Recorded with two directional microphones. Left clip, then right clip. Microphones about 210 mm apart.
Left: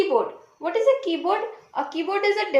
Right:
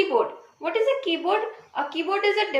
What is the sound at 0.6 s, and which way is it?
A woman's voice, 45° left (ahead or behind).